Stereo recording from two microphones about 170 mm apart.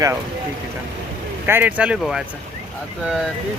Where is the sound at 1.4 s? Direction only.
10° right (ahead or behind).